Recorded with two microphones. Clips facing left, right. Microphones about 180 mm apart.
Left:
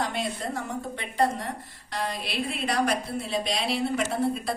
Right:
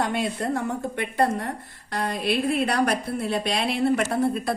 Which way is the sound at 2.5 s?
55° right (ahead or behind).